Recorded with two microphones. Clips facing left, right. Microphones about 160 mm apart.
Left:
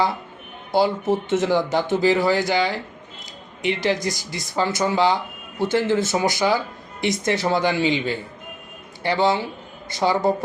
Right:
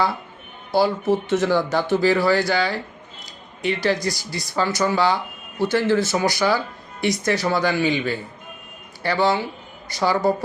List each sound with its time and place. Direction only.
0.7 s speech: 20° left (ahead or behind)